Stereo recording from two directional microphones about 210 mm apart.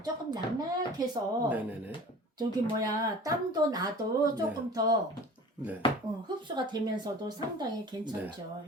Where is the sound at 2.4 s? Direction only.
15° right (ahead or behind).